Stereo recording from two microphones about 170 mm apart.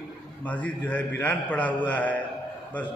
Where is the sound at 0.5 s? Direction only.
10° left (ahead or behind).